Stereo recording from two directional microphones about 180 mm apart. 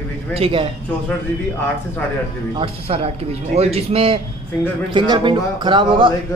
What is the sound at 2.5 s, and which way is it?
Speech, 30° right (ahead or behind).